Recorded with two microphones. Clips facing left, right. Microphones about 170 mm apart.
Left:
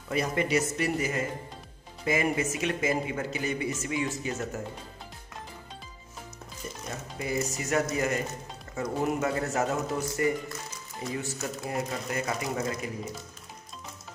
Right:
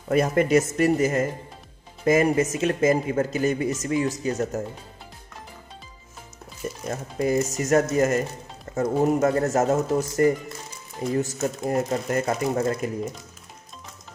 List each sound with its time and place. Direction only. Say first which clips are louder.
0.1 s speech: right 8 dB; 50° right (ahead or behind)
6.9 s speech: right 9 dB; 45° right (ahead or behind)